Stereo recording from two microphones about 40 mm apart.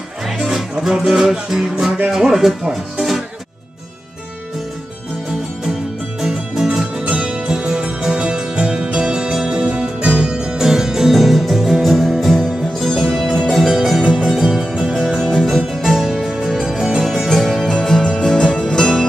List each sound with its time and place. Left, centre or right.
0.9 s speech: centre
6.2 s music: centre
7.0 s music: right; by 14.7 s centre
15.0 s music: centre
15.4 s music: centre; by 19.0 s left